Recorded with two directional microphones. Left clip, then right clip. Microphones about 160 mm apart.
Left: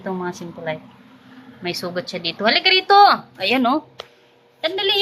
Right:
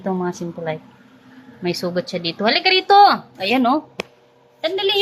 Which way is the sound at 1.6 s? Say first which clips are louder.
Right 3 dB; 30° right (ahead or behind).